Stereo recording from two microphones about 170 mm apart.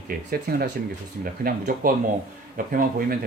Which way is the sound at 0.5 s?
60° right (ahead or behind).